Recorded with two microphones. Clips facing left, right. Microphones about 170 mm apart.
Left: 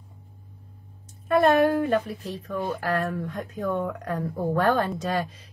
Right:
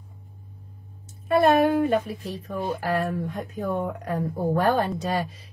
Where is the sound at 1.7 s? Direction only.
10° right (ahead or behind).